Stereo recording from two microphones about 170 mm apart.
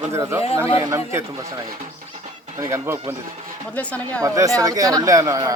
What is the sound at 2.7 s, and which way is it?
Speech, 15° right (ahead or behind).